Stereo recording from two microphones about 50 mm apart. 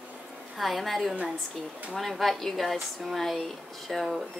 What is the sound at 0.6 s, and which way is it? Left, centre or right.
A woman's voice, centre.